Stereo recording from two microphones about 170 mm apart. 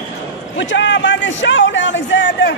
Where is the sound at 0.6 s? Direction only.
90° left.